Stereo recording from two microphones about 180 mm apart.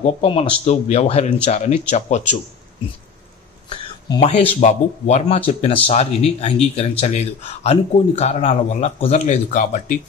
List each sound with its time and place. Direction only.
0.0 s speech: 35° left (ahead or behind)
3.6 s a sound: 25° left (ahead or behind)
4.2 s speech: 35° left (ahead or behind)